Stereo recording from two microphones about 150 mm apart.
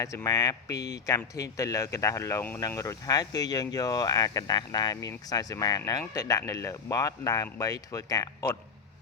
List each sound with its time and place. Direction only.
0.0 s speech: 20° left (ahead or behind)